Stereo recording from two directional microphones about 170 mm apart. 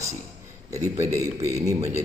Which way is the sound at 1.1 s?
15° right (ahead or behind).